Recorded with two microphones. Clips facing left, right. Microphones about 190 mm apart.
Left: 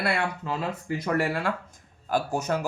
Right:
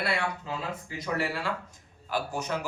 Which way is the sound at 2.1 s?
45° left (ahead or behind).